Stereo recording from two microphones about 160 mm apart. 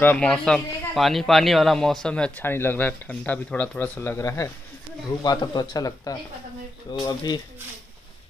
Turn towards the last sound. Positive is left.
turn(degrees=25)  # may be behind; listen again after turning